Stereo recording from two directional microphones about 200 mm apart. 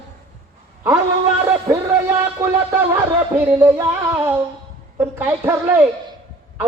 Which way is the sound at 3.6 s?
10° right (ahead or behind).